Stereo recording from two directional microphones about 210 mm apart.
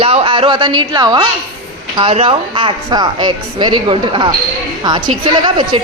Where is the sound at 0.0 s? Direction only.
25° right (ahead or behind).